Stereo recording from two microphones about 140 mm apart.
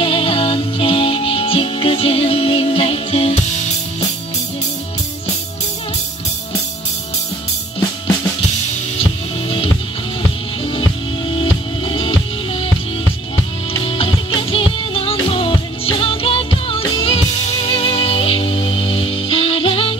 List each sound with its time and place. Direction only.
0.0 s music: 40° left (ahead or behind)
9.0 s music: 40° left (ahead or behind)
13.8 s music: 40° left (ahead or behind)